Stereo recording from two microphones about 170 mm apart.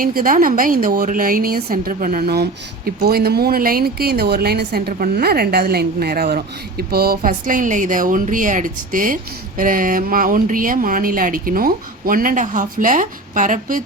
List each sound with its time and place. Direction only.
0.0 s a woman's voice: 55° right (ahead or behind)